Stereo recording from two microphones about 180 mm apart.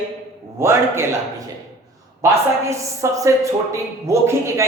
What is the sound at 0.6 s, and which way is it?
Speech, 15° right (ahead or behind).